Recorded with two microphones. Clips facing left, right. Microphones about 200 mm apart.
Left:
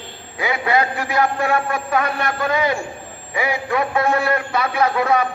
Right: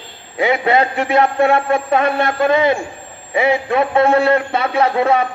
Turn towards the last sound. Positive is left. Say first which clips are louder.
# right 3 dB
turn(degrees=-25)  # may be behind; listen again after turning